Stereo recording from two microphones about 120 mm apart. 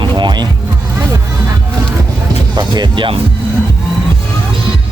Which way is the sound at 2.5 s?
35° right (ahead or behind).